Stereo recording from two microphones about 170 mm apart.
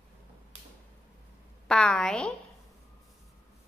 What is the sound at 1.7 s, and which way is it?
Speech, 5° left (ahead or behind).